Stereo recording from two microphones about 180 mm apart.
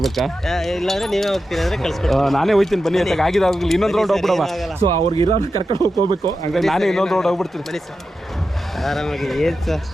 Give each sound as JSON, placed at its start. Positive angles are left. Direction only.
{"t": 0.0, "sound": "speech", "side_deg": 0}
{"t": 4.9, "sound": "speech", "side_deg": -30}
{"t": 6.5, "sound": "speech", "side_deg": 0}
{"t": 8.8, "sound": "speech", "side_deg": 0}